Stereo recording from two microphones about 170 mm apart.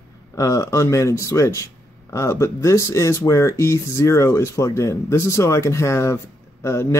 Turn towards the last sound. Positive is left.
turn(degrees=15)  # may be behind; listen again after turning